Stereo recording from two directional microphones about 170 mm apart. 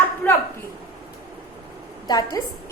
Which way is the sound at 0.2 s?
10° left (ahead or behind).